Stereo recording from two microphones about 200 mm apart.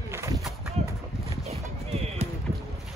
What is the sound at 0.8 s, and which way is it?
Horse, 35° right (ahead or behind).